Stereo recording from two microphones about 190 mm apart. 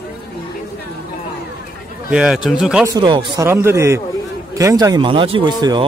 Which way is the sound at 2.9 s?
25° right (ahead or behind).